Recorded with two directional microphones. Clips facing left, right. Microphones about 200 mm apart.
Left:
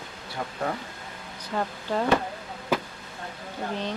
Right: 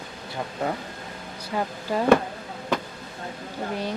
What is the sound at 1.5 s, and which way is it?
Speech, 10° right (ahead or behind).